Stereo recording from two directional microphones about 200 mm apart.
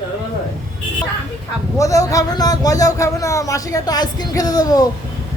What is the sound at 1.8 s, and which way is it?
Speech, 15° left (ahead or behind).